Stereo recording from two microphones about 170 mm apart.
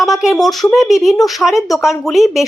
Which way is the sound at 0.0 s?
Centre (ahead or behind).